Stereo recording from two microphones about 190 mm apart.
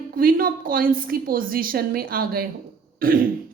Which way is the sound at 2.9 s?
50° right (ahead or behind).